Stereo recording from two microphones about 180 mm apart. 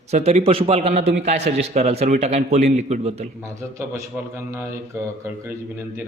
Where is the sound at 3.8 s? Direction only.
15° right (ahead or behind).